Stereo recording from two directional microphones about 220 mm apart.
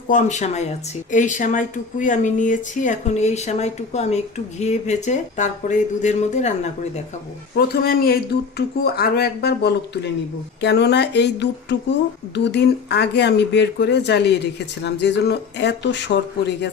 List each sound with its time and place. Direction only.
0.1 s speech: 35° left (ahead or behind)
7.5 s speech: 45° left (ahead or behind)